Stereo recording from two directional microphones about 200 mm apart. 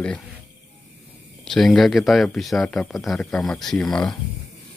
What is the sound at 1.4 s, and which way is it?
Speech, centre (ahead or behind).